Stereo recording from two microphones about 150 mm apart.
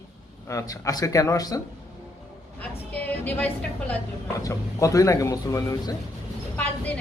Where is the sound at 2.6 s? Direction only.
10° left (ahead or behind).